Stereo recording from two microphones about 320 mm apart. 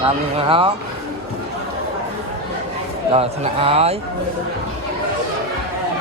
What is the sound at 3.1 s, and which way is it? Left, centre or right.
Speech, centre.